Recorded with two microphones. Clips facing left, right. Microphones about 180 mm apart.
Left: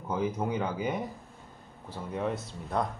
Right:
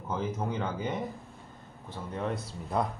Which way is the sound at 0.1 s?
10° left (ahead or behind).